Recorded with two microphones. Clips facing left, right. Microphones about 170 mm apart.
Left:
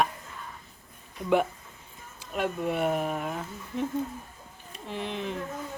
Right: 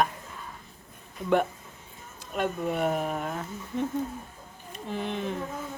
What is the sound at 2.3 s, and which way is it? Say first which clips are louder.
Speech: even; centre (ahead or behind).